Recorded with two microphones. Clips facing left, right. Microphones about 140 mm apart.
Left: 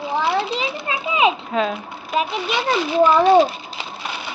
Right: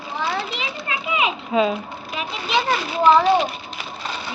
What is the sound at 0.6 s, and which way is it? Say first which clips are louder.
Children playing: left 4 dB; 30° left (ahead or behind).